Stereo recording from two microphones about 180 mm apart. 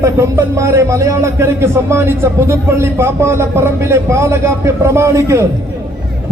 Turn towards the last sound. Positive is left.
turn(degrees=-15)  # may be behind; listen again after turning